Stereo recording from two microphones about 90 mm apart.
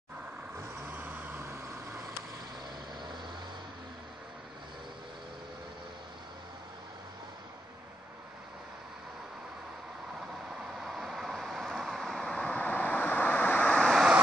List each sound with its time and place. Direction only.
0.8 s vehicle: 20° right (ahead or behind)
10.5 s vehicle: 5° right (ahead or behind); by 13.9 s 10° left (ahead or behind)